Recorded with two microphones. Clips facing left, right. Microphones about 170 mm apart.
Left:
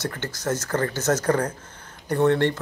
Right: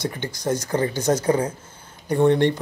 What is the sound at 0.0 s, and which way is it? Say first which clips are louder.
Speech: right 2 dB; 15° right (ahead or behind).